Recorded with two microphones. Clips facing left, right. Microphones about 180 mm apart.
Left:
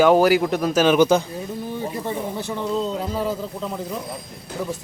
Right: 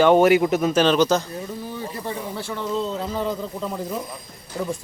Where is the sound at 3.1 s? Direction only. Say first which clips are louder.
Left 1 dB; 5° left (ahead or behind).